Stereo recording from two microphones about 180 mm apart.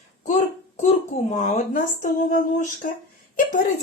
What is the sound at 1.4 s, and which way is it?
Speech, 45° left (ahead or behind).